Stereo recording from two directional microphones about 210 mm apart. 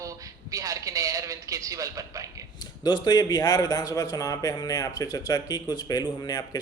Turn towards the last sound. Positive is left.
turn(degrees=20)  # may be behind; listen again after turning